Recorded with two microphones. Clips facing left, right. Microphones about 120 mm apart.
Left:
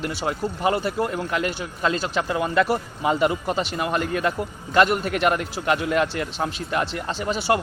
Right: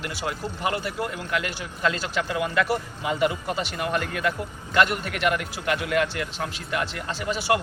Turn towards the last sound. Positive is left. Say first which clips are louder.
# left 2 dB
turn(degrees=30)  # may be behind; listen again after turning